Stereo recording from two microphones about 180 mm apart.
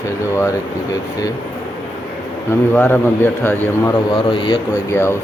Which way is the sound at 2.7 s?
10° left (ahead or behind).